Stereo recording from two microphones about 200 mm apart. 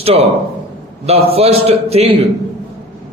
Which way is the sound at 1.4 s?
30° right (ahead or behind).